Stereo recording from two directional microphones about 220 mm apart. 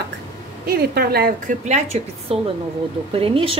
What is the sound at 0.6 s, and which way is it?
A woman's voice, 45° right (ahead or behind).